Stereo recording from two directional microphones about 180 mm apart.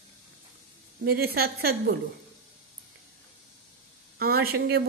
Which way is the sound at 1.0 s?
60° right (ahead or behind).